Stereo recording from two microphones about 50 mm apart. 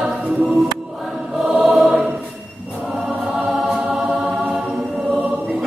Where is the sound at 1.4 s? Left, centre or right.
Right.